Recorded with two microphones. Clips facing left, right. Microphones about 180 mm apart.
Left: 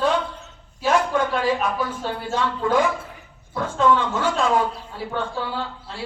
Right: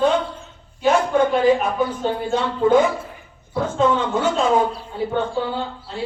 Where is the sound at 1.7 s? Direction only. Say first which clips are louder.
Right 5 dB; 20° right (ahead or behind).